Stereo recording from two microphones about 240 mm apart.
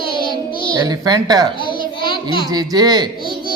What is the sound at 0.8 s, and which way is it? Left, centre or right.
A child's voice, centre.